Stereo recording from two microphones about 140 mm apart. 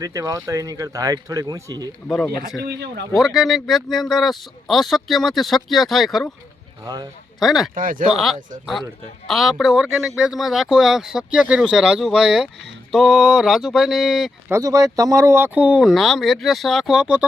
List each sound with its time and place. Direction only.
0.0 s speech: 25° right (ahead or behind)
2.0 s speech: centre (ahead or behind)
7.3 s speech: centre (ahead or behind)
7.8 s speech: 75° right (ahead or behind)
8.1 s speech: centre (ahead or behind)
14.5 s speech: 25° right (ahead or behind); by 17.2 s 5° right (ahead or behind)